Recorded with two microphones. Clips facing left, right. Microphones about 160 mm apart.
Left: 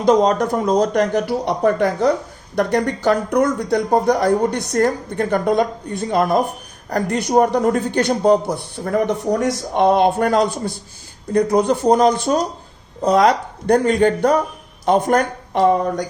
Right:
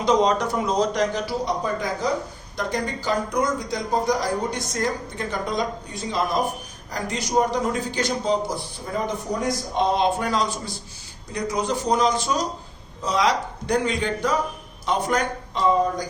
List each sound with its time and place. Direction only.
0.0 s speech: 50° left (ahead or behind)